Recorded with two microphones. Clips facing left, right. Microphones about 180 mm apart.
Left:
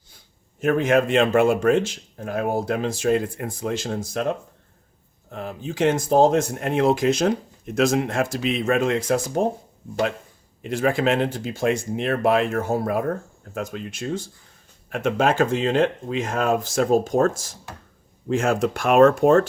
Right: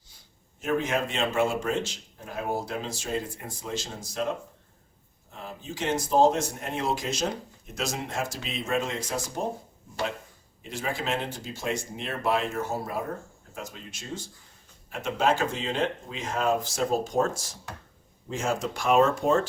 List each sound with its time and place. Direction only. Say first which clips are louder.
0.6 s speech: left 8 dB; 55° left (ahead or behind)
5.3 s speech: left 8 dB; 60° left (ahead or behind)
10.6 s speech: left 11 dB; 60° left (ahead or behind)